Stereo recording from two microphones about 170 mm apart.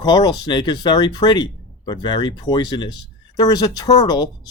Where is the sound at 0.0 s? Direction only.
25° left (ahead or behind).